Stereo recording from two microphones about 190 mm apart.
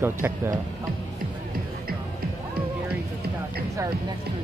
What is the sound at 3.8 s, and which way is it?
Speech, 15° right (ahead or behind).